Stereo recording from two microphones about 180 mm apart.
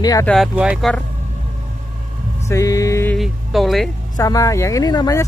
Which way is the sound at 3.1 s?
Centre (ahead or behind).